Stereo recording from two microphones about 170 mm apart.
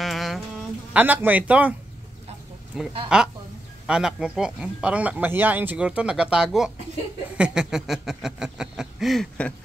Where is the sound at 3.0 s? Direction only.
5° right (ahead or behind).